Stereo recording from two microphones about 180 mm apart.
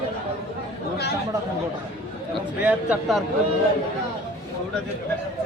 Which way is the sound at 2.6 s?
5° right (ahead or behind).